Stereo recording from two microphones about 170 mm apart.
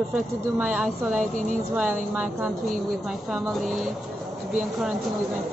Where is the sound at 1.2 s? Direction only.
45° right (ahead or behind).